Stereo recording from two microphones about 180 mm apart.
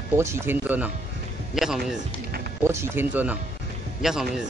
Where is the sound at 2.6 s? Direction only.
15° right (ahead or behind).